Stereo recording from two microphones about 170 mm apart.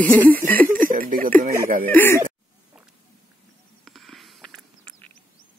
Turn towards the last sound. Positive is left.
turn(degrees=0)  # may be behind; listen again after turning